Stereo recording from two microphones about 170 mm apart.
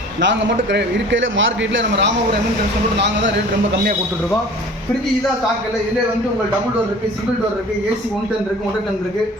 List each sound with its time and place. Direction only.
0.2 s a man's voice: 90° right